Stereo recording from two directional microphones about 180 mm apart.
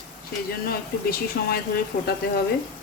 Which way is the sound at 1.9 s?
50° left (ahead or behind).